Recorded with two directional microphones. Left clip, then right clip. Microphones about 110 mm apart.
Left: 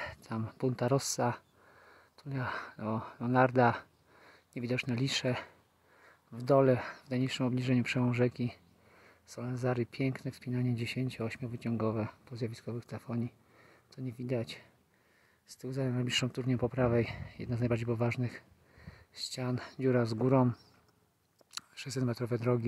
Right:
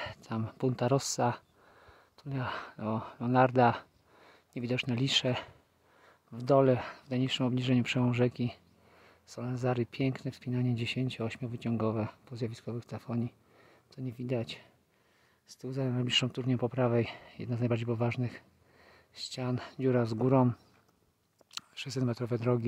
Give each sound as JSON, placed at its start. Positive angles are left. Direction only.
{"t": 0.0, "sound": "speech", "side_deg": -15}
{"t": 21.5, "sound": "speech", "side_deg": -10}